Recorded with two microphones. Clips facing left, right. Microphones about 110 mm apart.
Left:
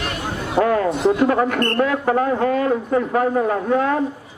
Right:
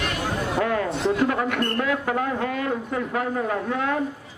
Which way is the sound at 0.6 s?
40° left (ahead or behind).